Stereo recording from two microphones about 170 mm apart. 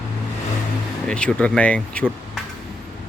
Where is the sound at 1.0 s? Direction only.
5° left (ahead or behind).